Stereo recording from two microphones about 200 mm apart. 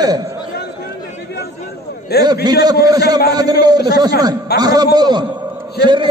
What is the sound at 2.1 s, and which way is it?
Speech, 55° left (ahead or behind).